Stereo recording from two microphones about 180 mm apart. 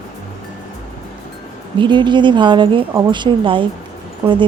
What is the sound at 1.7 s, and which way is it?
A woman's voice, 25° right (ahead or behind).